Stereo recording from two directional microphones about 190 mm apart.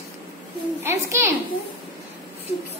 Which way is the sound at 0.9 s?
15° right (ahead or behind).